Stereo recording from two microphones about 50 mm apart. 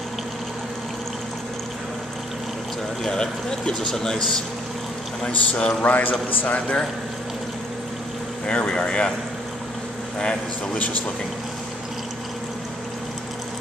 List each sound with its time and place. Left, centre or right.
3.0 s speech: centre
5.2 s speech: left
5.8 s a man's voice: left
8.5 s speech: centre
10.1 s speech: centre